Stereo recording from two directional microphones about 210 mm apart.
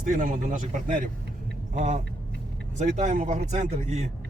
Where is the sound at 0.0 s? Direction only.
40° right (ahead or behind).